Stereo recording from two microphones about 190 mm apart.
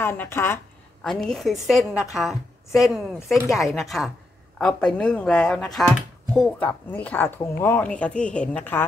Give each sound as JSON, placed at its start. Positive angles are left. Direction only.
{"t": 0.0, "sound": "speech", "side_deg": 10}
{"t": 1.0, "sound": "a woman's voice", "side_deg": 0}